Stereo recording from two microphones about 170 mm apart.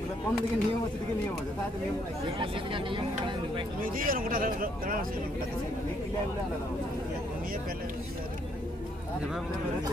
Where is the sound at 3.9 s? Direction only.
55° right (ahead or behind).